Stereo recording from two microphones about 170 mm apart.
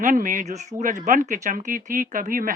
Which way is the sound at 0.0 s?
50° right (ahead or behind).